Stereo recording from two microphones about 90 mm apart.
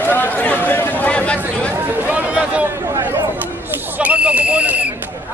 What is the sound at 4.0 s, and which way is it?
Fire alarm, 15° right (ahead or behind).